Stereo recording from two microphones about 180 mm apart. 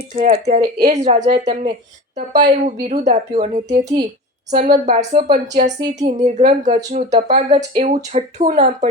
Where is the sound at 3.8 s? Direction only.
20° right (ahead or behind).